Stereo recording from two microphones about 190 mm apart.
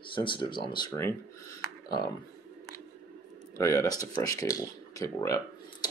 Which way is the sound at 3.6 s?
15° left (ahead or behind).